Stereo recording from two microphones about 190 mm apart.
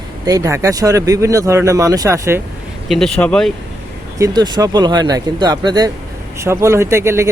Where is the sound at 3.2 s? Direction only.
5° left (ahead or behind).